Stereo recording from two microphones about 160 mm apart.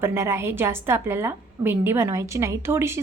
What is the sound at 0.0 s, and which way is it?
A woman's voice, 15° right (ahead or behind).